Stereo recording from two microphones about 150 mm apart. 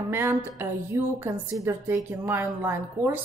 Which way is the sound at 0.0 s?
15° right (ahead or behind).